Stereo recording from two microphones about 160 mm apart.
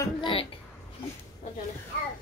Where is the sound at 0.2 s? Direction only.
35° left (ahead or behind).